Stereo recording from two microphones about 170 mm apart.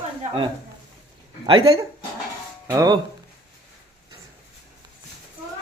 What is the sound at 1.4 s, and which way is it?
Speech, 30° right (ahead or behind).